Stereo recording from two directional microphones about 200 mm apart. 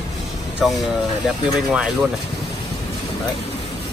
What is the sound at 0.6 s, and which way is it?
Speech, centre (ahead or behind).